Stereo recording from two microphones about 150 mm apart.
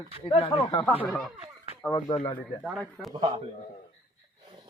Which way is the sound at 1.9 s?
35° left (ahead or behind).